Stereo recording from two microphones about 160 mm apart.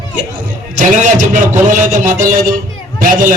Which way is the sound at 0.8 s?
50° right (ahead or behind).